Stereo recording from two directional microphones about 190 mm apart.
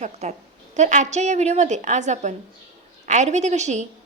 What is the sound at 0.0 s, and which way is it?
A woman's voice, 35° right (ahead or behind).